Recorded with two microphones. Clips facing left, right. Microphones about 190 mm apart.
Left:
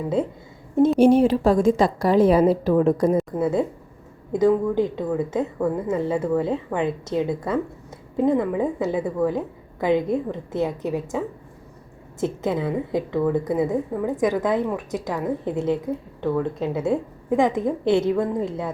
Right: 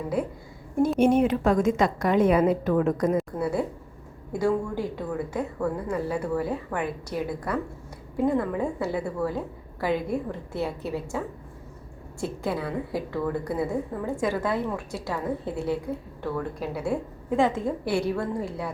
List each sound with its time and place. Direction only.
0.2 s a woman's voice: 25° left (ahead or behind)
3.3 s a woman's voice: 20° left (ahead or behind)
12.2 s a woman's voice: 20° left (ahead or behind)